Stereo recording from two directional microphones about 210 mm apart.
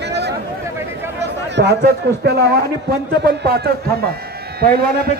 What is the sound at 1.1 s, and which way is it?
A man's voice, 50° right (ahead or behind).